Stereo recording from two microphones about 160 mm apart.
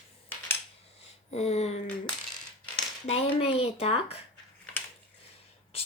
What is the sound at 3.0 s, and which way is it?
Speech, 40° left (ahead or behind).